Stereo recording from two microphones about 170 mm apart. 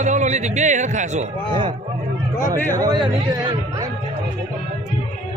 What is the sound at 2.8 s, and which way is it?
Speech, 25° right (ahead or behind).